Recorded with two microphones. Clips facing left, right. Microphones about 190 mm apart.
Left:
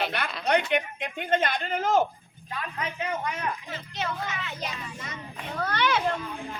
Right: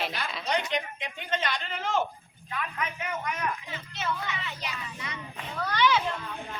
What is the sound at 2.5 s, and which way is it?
A man's voice, 35° left (ahead or behind).